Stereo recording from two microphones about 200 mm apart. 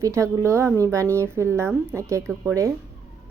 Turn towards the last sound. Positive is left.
turn(degrees=-15)  # may be behind; listen again after turning